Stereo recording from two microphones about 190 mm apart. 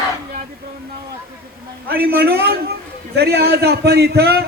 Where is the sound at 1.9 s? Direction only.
55° right (ahead or behind).